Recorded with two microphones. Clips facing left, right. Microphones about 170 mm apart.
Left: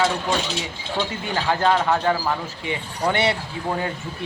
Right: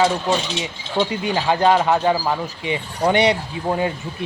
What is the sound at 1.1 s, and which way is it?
A man's voice, 15° right (ahead or behind).